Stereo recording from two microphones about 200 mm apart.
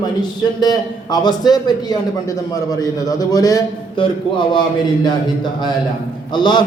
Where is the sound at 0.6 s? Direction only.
20° left (ahead or behind).